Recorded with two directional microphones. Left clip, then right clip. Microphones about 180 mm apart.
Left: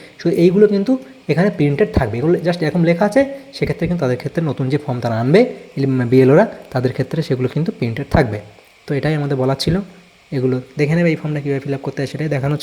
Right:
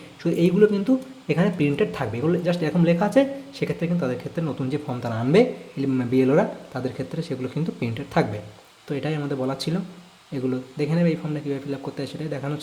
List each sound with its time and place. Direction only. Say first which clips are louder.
0.2 s a woman's voice: left 7 dB; 25° left (ahead or behind)